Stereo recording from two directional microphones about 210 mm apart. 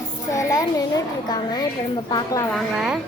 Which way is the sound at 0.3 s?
15° left (ahead or behind).